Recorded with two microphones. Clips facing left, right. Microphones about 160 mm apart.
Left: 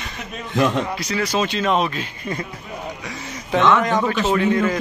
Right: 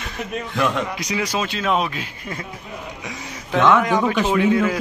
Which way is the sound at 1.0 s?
15° right (ahead or behind).